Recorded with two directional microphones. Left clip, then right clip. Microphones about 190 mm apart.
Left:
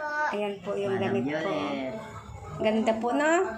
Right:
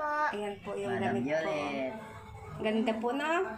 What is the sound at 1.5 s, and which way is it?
A woman's voice, 10° left (ahead or behind).